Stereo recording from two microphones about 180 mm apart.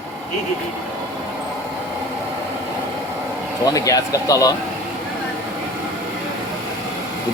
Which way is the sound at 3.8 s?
20° left (ahead or behind).